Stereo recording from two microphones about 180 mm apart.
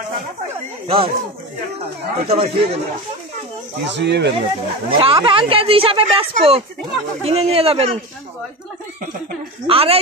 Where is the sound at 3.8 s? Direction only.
75° right (ahead or behind).